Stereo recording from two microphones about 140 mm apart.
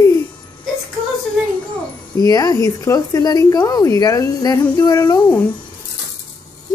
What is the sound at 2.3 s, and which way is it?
Speech, 25° left (ahead or behind).